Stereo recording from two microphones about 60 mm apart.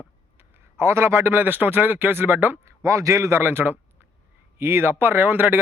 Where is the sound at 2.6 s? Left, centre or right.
Right.